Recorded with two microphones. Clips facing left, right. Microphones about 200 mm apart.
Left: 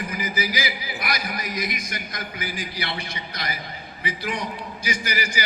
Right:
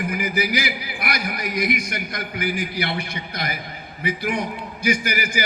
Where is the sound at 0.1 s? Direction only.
60° right (ahead or behind).